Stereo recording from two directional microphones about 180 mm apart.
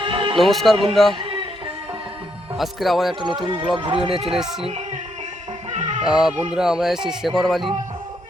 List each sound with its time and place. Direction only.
0.0 s music: 30° right (ahead or behind)
0.3 s speech: centre (ahead or behind)
2.6 s speech: centre (ahead or behind)
3.2 s speech: 25° right (ahead or behind)
4.3 s speech: centre (ahead or behind)
5.7 s music: 40° right (ahead or behind)
6.1 s speech: 5° right (ahead or behind)